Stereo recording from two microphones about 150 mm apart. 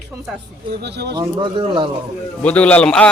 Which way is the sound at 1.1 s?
30° right (ahead or behind).